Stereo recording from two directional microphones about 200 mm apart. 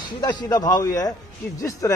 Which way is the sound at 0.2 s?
20° left (ahead or behind).